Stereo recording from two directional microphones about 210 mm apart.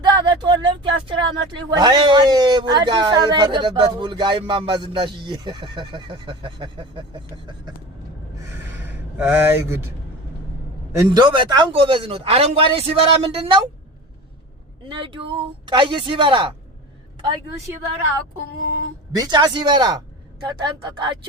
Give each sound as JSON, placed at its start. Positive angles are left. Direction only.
{"t": 0.0, "sound": "speech", "side_deg": -20}
{"t": 8.8, "sound": "speech", "side_deg": -10}
{"t": 10.9, "sound": "speech", "side_deg": -20}
{"t": 14.8, "sound": "speech", "side_deg": -25}
{"t": 19.1, "sound": "speech", "side_deg": -20}